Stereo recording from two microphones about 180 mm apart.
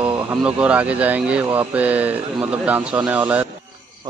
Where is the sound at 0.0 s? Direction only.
5° right (ahead or behind).